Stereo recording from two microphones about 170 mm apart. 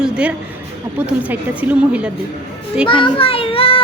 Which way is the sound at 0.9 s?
10° right (ahead or behind).